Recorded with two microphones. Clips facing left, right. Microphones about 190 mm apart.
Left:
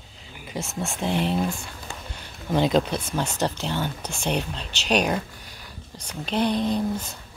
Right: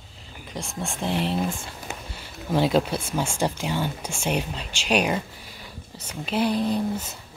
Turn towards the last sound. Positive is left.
turn(degrees=-5)  # may be behind; listen again after turning